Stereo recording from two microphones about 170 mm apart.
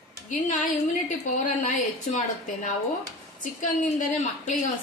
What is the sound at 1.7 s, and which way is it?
A woman's voice, 50° left (ahead or behind).